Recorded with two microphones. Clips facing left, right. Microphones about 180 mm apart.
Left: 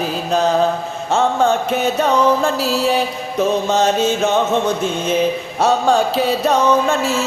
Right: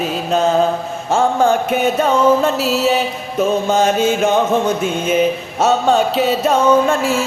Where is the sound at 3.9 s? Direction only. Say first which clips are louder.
Right 2 dB; 10° right (ahead or behind).